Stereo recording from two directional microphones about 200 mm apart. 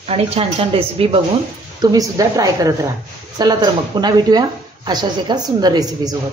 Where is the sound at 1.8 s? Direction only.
15° right (ahead or behind).